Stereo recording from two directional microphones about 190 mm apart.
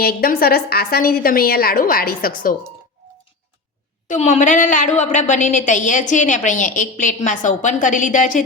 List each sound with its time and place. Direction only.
0.0 s a woman's voice: 55° left (ahead or behind)
4.1 s a woman's voice: 40° left (ahead or behind)